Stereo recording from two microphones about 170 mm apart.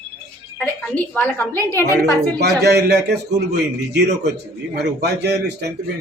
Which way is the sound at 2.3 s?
80° right.